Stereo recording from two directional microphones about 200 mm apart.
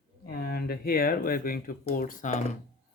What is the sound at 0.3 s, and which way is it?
Speech, 50° left (ahead or behind).